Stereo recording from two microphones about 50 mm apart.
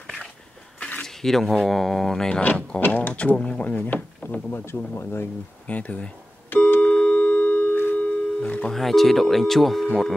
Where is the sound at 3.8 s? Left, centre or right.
Left.